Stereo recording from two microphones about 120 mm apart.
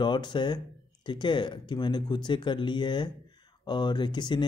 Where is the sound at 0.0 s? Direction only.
40° left (ahead or behind).